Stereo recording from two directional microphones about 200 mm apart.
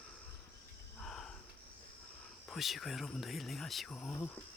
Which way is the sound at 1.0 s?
Centre (ahead or behind).